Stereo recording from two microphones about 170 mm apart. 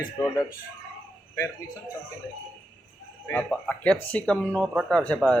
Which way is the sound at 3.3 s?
10° left (ahead or behind).